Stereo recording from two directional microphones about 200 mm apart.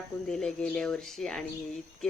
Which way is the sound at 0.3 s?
5° left (ahead or behind).